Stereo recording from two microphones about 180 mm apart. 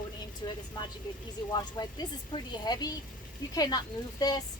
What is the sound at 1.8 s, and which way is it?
A woman's voice, 20° left (ahead or behind).